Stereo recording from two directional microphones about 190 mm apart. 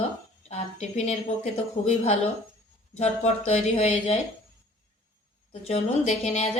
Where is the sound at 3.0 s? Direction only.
35° left (ahead or behind).